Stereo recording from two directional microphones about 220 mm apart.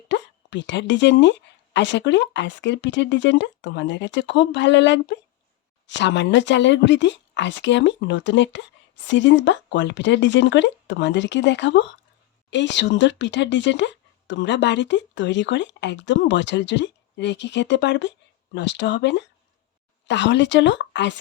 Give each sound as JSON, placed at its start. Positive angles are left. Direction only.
{"t": 0.1, "sound": "speech", "side_deg": 55}